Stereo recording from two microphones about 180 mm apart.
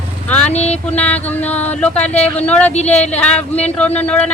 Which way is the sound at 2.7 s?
40° left (ahead or behind).